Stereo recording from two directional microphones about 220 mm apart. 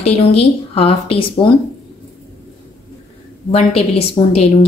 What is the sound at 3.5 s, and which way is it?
Speech, 25° left (ahead or behind).